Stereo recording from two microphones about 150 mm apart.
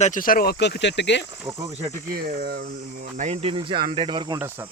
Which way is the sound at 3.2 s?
50° right (ahead or behind).